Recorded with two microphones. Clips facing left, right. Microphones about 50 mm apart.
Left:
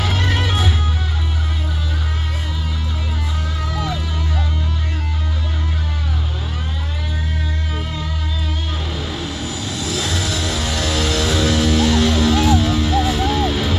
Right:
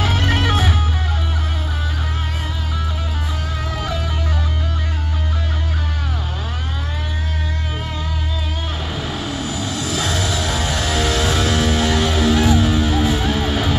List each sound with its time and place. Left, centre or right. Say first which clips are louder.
0.0 s music: right 2 dB; right
10.3 s music: right 1 dB; right